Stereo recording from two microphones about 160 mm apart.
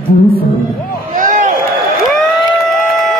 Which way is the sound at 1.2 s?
50° right (ahead or behind).